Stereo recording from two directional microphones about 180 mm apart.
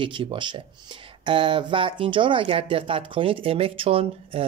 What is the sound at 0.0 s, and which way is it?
Speech, 30° right (ahead or behind).